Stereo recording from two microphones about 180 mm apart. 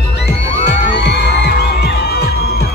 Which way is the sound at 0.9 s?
70° left (ahead or behind).